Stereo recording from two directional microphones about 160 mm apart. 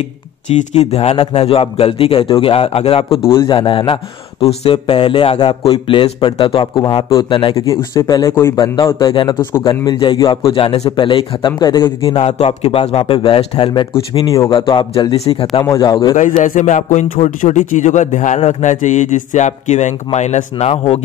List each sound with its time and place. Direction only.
0.7 s a man's voice: 40° left (ahead or behind)
12.2 s a man's voice: 40° left (ahead or behind); by 16.2 s 25° left (ahead or behind)
16.2 s a man's voice: 55° left (ahead or behind)